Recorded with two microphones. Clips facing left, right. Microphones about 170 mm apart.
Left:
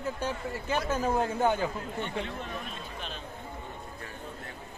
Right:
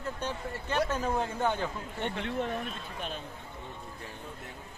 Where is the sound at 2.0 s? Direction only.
65° right (ahead or behind).